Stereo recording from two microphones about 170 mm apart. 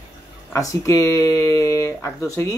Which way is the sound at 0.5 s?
20° left (ahead or behind).